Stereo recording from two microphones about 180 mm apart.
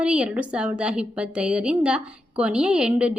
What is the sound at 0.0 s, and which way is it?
A woman's voice, 5° right (ahead or behind).